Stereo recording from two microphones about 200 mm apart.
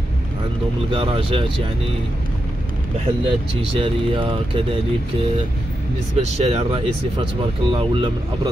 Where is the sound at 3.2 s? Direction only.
25° right (ahead or behind).